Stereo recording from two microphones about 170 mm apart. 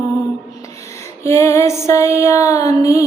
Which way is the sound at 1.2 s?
15° left (ahead or behind).